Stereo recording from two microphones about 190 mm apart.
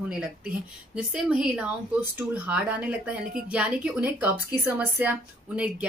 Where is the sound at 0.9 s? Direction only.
5° right (ahead or behind).